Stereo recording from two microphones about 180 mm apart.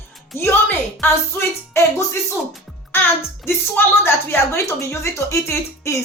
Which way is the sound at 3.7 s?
15° left (ahead or behind).